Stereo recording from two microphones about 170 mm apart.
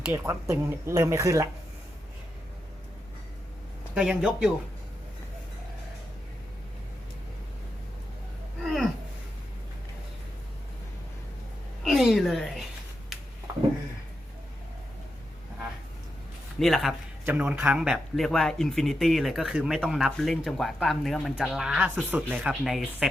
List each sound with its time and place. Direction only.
0.0 s speech: 10° right (ahead or behind)
3.9 s speech: 5° right (ahead or behind)
11.8 s a sound: centre (ahead or behind)
16.6 s speech: centre (ahead or behind)